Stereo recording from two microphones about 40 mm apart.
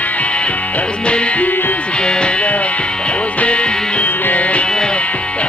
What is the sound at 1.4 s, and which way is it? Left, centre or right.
Music, left.